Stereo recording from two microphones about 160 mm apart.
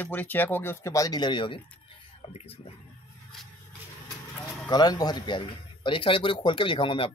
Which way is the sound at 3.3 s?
Centre (ahead or behind).